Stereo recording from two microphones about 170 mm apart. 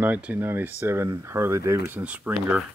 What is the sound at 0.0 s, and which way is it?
Speech, 10° right (ahead or behind).